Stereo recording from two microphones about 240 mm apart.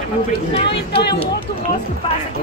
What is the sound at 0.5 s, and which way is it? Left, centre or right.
Speech, left.